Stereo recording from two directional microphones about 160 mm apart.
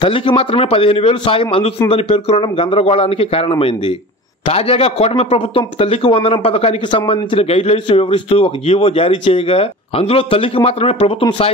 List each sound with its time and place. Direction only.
0.0 s a man's voice: 30° left (ahead or behind)